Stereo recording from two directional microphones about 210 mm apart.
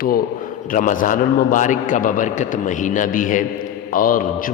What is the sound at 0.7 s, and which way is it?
A man's voice, 40° left (ahead or behind).